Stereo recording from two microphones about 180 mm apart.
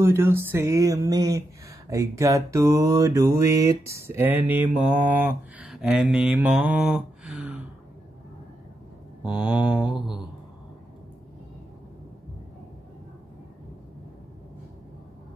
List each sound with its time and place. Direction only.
0.0 s mantra: 15° right (ahead or behind)
9.2 s mantra: 5° right (ahead or behind)